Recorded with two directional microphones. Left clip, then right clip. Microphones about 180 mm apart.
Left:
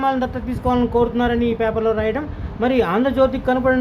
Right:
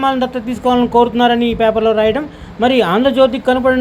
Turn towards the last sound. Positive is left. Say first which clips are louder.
# right 5 dB
turn(degrees=-15)  # may be behind; listen again after turning